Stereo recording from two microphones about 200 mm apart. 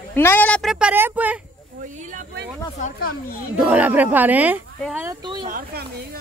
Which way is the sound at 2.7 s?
40° left (ahead or behind).